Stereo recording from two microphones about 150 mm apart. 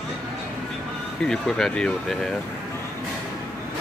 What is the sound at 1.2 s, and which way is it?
Speech, centre (ahead or behind).